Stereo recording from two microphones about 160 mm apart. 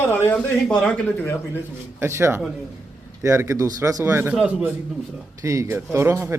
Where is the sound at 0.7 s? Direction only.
5° left (ahead or behind).